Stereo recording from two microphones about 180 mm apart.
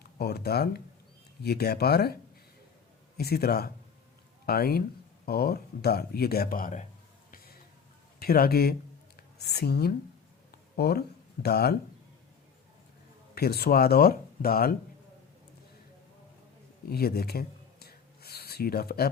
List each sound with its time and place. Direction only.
0.2 s speech: 60° left (ahead or behind)
3.2 s speech: 60° left (ahead or behind)
7.3 s a sound: 55° left (ahead or behind)
8.2 s speech: 55° left (ahead or behind)
13.3 s speech: 60° left (ahead or behind)
16.9 s a sound: 60° left (ahead or behind)